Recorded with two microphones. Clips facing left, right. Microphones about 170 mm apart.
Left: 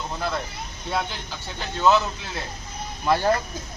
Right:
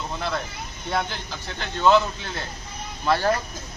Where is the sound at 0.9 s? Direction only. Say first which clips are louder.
Right 1 dB; centre (ahead or behind).